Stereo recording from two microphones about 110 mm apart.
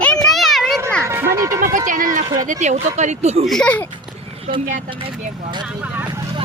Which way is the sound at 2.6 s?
90° right.